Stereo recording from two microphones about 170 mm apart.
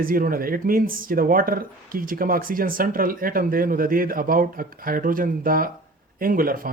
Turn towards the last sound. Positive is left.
turn(degrees=-55)  # may be behind; listen again after turning